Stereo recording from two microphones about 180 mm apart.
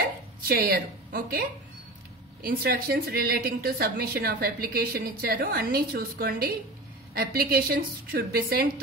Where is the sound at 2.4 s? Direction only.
55° right (ahead or behind).